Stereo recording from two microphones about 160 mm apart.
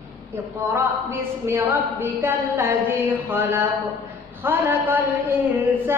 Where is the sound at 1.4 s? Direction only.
15° right (ahead or behind).